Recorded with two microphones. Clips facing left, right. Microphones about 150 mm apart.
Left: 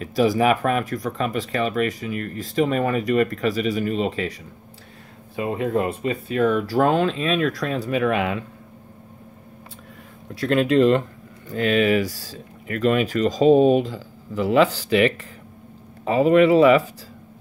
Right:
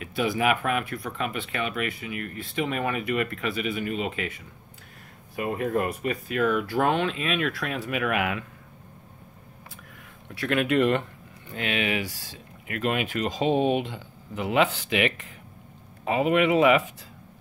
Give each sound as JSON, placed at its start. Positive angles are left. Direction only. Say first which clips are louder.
{"t": 0.0, "sound": "speech", "louder": "left 6 dB", "side_deg": 40}
{"t": 5.3, "sound": "speech", "louder": "left 4 dB", "side_deg": 25}
{"t": 10.3, "sound": "speech", "louder": "left 5 dB", "side_deg": 35}